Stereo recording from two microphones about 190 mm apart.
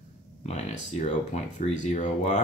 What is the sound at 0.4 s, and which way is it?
Speech, 35° left (ahead or behind).